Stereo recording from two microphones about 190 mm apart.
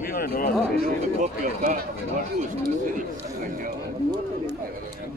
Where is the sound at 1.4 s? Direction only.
45° right (ahead or behind).